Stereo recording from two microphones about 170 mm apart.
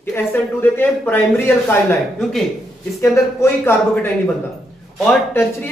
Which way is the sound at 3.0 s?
15° left (ahead or behind).